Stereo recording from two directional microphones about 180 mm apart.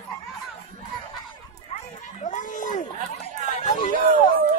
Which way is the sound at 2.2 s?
45° left (ahead or behind).